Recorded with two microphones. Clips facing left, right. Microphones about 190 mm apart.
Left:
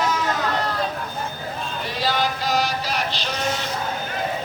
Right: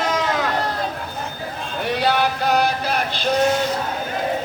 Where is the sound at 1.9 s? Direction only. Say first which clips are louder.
Right 5 dB; 65° right (ahead or behind).